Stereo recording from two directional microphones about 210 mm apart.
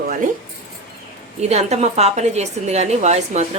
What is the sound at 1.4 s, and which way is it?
A woman's voice, 30° right (ahead or behind).